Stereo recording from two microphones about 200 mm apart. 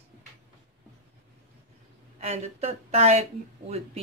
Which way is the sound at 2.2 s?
30° right (ahead or behind).